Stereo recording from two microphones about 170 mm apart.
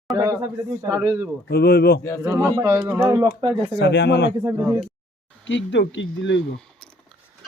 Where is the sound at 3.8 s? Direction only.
85° left.